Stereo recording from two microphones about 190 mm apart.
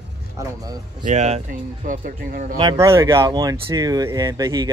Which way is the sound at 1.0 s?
35° right (ahead or behind).